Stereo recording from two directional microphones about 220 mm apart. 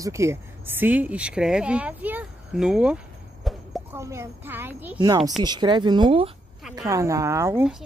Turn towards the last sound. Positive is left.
turn(degrees=-5)  # may be behind; listen again after turning